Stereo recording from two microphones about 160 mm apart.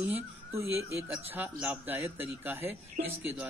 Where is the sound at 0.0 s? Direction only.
15° right (ahead or behind).